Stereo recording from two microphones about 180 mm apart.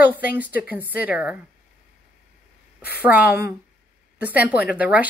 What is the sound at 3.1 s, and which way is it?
Speech, 10° right (ahead or behind).